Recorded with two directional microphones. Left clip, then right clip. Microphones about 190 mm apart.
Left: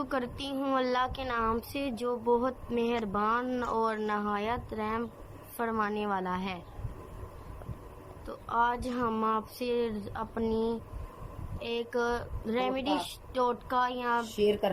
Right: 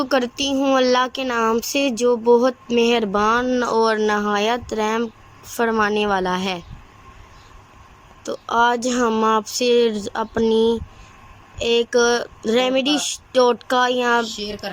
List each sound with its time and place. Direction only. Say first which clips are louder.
0.0 s speech: right 14 dB; 45° right (ahead or behind)
8.2 s speech: right 11 dB; 45° right (ahead or behind)
14.3 s speech: left 2 dB; 15° left (ahead or behind)